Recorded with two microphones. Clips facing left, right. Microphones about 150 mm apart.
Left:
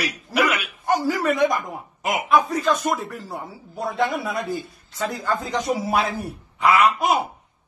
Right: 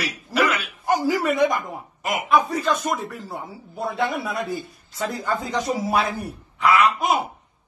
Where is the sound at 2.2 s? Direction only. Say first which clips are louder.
Left 1 dB; centre (ahead or behind).